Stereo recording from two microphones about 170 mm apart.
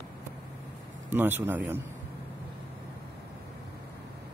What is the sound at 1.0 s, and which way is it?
Speech, 10° right (ahead or behind).